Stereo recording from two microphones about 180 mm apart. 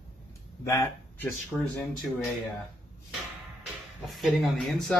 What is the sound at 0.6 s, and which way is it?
Speech, 15° left (ahead or behind).